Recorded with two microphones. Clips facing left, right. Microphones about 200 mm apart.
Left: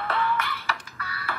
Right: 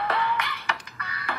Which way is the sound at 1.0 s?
15° right (ahead or behind).